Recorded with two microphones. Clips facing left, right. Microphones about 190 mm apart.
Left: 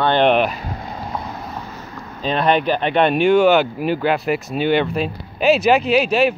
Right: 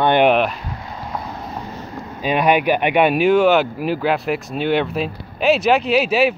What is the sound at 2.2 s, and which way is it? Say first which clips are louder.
Speech: right 1 dB; 10° right (ahead or behind).